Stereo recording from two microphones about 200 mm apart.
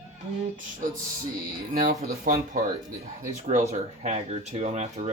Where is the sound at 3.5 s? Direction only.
35° right (ahead or behind).